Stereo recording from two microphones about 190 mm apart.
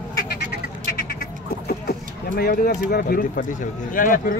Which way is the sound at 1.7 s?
55° left (ahead or behind).